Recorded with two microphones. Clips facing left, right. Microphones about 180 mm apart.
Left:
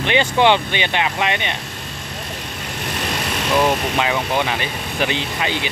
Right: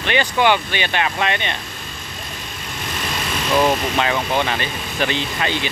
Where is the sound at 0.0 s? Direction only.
20° left (ahead or behind).